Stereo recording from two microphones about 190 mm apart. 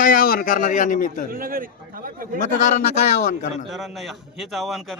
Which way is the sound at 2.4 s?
40° left (ahead or behind).